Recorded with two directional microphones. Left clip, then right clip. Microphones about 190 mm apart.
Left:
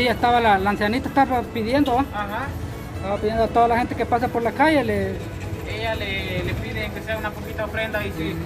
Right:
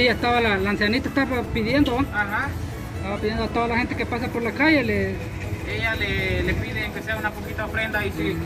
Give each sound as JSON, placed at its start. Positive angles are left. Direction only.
{"t": 0.0, "sound": "speech", "side_deg": 15}
{"t": 3.1, "sound": "speech", "side_deg": 5}